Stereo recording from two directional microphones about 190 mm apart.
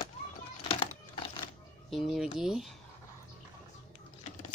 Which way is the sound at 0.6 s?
25° left (ahead or behind).